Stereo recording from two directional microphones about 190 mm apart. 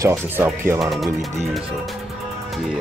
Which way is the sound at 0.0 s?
15° right (ahead or behind).